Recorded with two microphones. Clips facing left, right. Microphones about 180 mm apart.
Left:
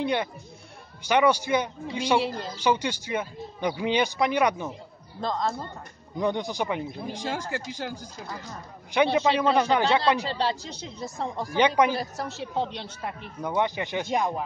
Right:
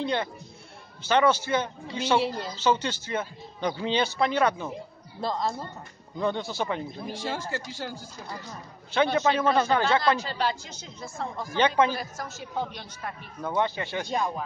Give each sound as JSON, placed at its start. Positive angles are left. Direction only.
{"t": 0.0, "sound": "speech", "side_deg": 15}
{"t": 5.2, "sound": "speech", "side_deg": -5}
{"t": 6.1, "sound": "speech", "side_deg": 15}
{"t": 10.2, "sound": "speech", "side_deg": 30}
{"t": 11.5, "sound": "a man's voice", "side_deg": 15}